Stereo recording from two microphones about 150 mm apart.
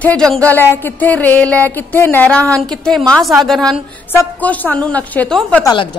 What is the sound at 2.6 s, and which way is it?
A woman's voice, 5° left (ahead or behind).